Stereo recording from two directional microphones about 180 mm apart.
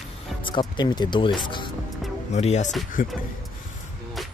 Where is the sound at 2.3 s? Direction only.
40° left (ahead or behind).